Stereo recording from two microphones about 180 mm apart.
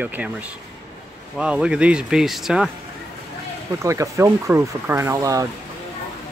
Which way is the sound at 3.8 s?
15° right (ahead or behind).